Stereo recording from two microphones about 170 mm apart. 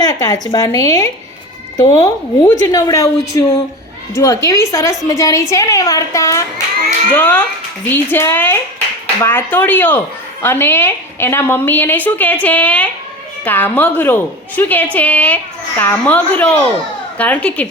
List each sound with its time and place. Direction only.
0.0 s a woman's voice: 20° left (ahead or behind)